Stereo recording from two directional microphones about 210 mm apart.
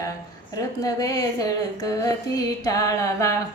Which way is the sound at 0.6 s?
15° left (ahead or behind).